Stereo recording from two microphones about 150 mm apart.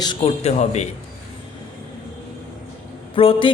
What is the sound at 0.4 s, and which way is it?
Speech, 50° left (ahead or behind).